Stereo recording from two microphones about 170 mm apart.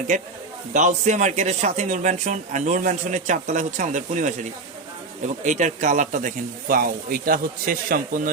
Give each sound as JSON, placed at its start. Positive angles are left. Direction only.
{"t": 0.1, "sound": "speech", "side_deg": -45}
{"t": 5.4, "sound": "speech", "side_deg": -45}